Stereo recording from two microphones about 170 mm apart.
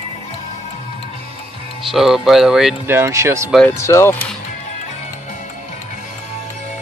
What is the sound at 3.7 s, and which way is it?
Speech, 15° left (ahead or behind).